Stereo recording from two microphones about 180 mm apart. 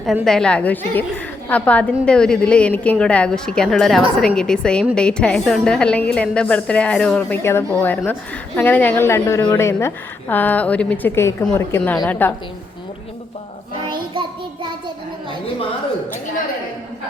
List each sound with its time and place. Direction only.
0.0 s a woman's voice: centre (ahead or behind)
14.1 s music: 25° right (ahead or behind)